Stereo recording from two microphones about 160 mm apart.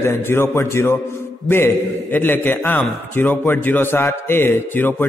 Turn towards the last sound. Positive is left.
turn(degrees=15)  # may be behind; listen again after turning